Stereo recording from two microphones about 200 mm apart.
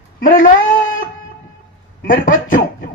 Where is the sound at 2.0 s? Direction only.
45° left (ahead or behind).